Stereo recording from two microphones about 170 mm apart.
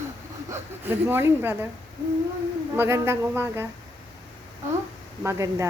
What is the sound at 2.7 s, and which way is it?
Speech, 15° right (ahead or behind).